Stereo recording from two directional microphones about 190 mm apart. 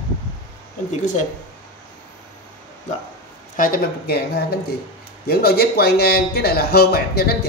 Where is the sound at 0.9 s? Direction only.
40° left (ahead or behind).